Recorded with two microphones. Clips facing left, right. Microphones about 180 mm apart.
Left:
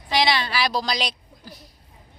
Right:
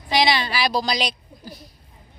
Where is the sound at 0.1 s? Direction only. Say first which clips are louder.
Right 2 dB; centre (ahead or behind).